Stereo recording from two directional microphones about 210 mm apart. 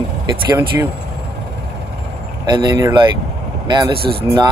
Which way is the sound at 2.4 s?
20° right (ahead or behind).